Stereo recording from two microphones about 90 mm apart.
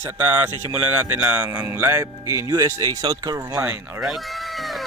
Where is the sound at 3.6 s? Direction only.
25° right (ahead or behind).